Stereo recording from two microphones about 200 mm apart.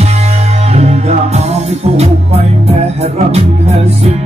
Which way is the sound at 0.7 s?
35° right (ahead or behind).